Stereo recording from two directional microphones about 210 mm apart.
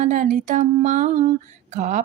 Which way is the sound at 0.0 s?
35° right (ahead or behind).